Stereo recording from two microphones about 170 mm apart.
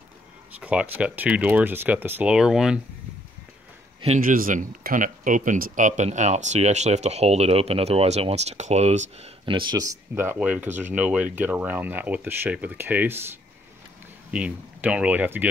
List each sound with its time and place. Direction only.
0.6 s speech: 5° right (ahead or behind)
4.2 s speech: 55° right (ahead or behind); by 13.2 s 10° right (ahead or behind)
14.3 s speech: 5° right (ahead or behind)